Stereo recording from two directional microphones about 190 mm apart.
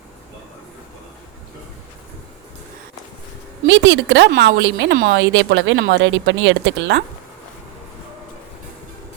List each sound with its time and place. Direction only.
3.7 s speech: 75° right (ahead or behind)
4.3 s a woman's voice: 60° right (ahead or behind)
4.9 s a woman's voice: 55° right (ahead or behind)
5.2 s speech: 80° right